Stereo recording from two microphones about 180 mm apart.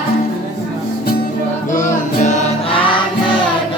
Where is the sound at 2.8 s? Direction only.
25° left (ahead or behind).